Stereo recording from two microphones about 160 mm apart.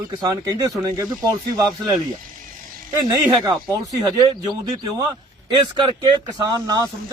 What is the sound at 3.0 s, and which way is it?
Speech, 20° right (ahead or behind).